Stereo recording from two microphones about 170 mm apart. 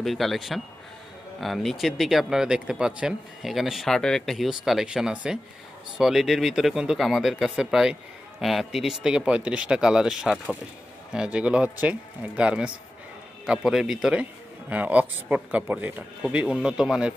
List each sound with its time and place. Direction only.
0.0 s speech: centre (ahead or behind)
10.3 s speech: 5° left (ahead or behind)
11.1 s a man's voice: 5° right (ahead or behind)